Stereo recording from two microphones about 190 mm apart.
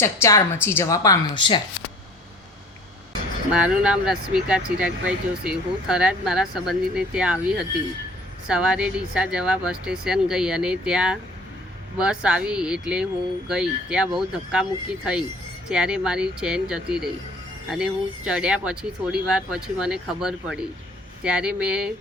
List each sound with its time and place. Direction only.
0.0 s speech: 15° left (ahead or behind)
3.5 s speech: 5° right (ahead or behind)
18.3 s speech: 5° right (ahead or behind)